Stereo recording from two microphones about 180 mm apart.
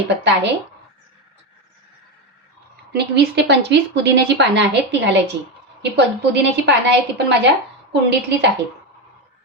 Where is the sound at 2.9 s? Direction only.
70° right (ahead or behind).